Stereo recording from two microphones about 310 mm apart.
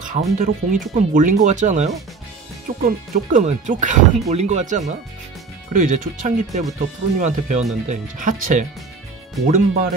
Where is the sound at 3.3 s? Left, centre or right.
Right.